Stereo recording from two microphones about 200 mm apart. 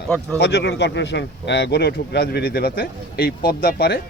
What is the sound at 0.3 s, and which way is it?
Speech, 60° left (ahead or behind).